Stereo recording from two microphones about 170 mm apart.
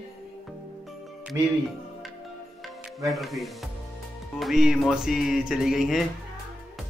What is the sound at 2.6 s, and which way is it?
A man's voice, centre (ahead or behind).